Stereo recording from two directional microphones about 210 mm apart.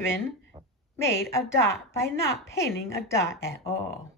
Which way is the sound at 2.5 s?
15° left (ahead or behind).